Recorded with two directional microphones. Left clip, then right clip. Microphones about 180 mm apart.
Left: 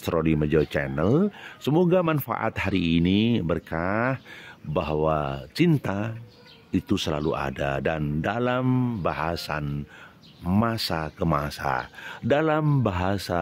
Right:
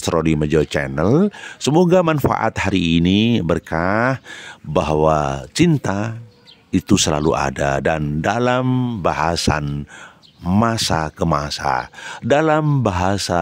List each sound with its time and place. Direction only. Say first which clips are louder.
0.0 s speech: right 6 dB; 30° right (ahead or behind)